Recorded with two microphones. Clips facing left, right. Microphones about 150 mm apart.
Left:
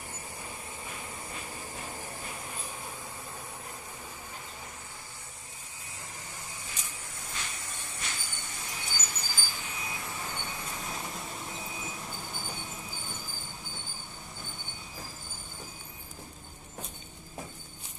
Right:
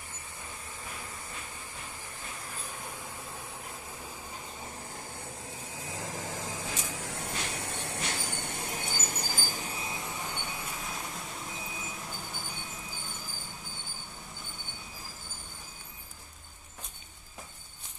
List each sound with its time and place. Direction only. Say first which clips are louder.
5.9 s spray: right 9 dB; 90° right; by 9.8 s 35° right (ahead or behind)
9.8 s vehicle: right 1 dB; 20° right (ahead or behind)